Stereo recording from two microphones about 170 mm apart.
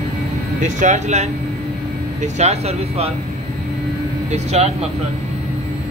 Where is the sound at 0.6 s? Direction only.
45° right (ahead or behind).